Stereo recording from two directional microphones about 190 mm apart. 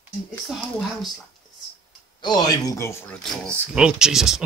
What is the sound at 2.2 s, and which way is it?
Speech, 20° left (ahead or behind).